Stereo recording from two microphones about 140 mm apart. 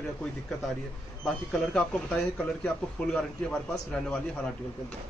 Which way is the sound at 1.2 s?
5° left (ahead or behind).